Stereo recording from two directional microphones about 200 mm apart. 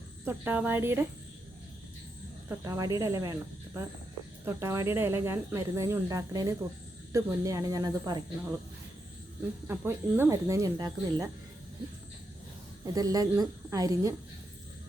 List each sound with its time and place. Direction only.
0.3 s speech: 10° right (ahead or behind)
2.5 s speech: 15° right (ahead or behind)
9.6 s speech: 10° right (ahead or behind)
12.8 s speech: 15° right (ahead or behind)